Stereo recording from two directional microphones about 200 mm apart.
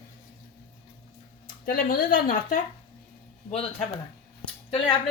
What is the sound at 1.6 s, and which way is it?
Speech, 45° left (ahead or behind).